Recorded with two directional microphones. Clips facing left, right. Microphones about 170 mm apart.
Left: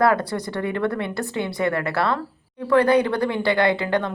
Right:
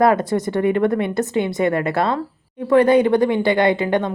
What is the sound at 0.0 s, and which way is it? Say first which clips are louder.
A woman's voice: right 4 dB; 20° right (ahead or behind).